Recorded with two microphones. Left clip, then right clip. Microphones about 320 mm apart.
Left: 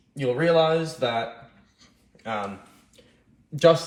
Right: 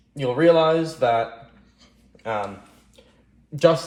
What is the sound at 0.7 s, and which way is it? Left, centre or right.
Speech, right.